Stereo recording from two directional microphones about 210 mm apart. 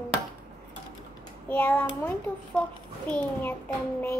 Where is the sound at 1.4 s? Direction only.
10° left (ahead or behind).